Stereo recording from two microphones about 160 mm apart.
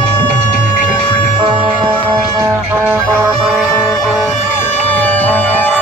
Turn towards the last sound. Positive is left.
turn(degrees=10)  # may be behind; listen again after turning